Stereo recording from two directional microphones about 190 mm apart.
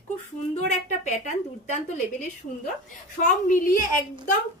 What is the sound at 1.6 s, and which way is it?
Speech, 35° left (ahead or behind).